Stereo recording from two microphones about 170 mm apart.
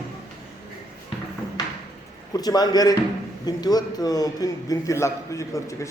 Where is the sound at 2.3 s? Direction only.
20° left (ahead or behind).